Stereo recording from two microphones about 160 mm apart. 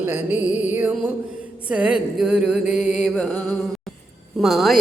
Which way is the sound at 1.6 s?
5° right (ahead or behind).